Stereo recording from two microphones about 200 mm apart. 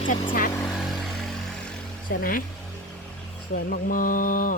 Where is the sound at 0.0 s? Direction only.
40° left (ahead or behind).